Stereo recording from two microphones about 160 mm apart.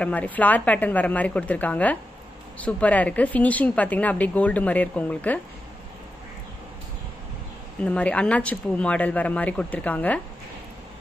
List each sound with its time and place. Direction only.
0.0 s a woman's voice: 10° left (ahead or behind)
7.8 s a woman's voice: 5° left (ahead or behind)